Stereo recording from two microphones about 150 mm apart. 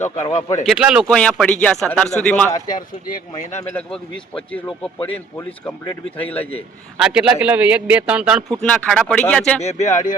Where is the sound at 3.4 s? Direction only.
50° left (ahead or behind).